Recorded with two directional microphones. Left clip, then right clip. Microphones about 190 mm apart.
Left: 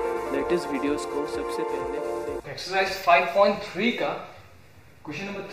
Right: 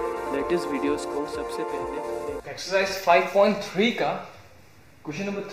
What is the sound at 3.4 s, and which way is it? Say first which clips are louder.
Speech: right 1 dB; 30° right (ahead or behind).